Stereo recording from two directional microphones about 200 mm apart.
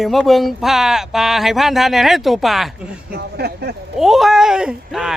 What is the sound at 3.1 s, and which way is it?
Speech, 55° right (ahead or behind).